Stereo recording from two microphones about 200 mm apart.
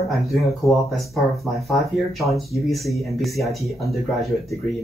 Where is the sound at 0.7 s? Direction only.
Centre (ahead or behind).